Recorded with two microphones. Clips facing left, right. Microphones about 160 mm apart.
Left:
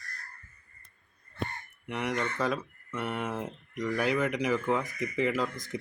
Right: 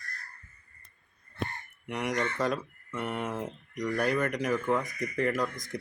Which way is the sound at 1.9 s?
Centre (ahead or behind).